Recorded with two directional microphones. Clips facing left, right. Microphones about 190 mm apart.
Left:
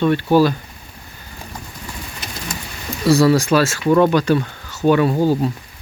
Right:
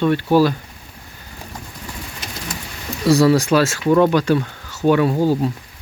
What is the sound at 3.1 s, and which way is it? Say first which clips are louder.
Speech: even; 20° right (ahead or behind).